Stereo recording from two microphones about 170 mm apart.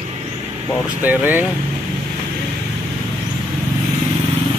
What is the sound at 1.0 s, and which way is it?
Speech, 10° right (ahead or behind).